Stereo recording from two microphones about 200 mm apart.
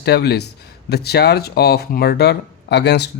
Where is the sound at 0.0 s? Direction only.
55° left (ahead or behind).